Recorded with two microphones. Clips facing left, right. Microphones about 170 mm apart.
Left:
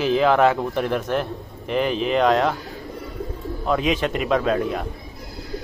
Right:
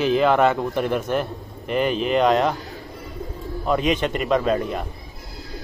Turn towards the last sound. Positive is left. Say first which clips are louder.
# even
turn(degrees=0)  # may be behind; listen again after turning